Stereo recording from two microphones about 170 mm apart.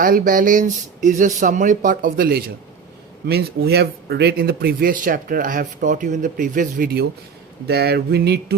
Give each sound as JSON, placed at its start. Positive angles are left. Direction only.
{"t": 0.0, "sound": "speech", "side_deg": -55}
{"t": 3.2, "sound": "speech", "side_deg": -70}
{"t": 7.7, "sound": "music", "side_deg": -70}